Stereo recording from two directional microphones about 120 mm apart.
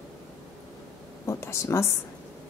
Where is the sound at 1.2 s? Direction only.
25° left (ahead or behind).